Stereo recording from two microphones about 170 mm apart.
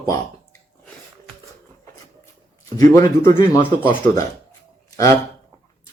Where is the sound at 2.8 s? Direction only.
20° left (ahead or behind).